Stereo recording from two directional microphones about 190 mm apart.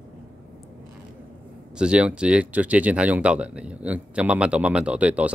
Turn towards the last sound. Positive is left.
turn(degrees=-5)  # may be behind; listen again after turning